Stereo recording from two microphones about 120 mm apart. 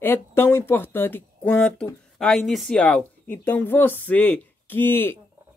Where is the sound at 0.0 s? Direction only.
20° left (ahead or behind).